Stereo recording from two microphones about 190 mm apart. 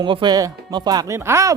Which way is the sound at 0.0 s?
25° right (ahead or behind).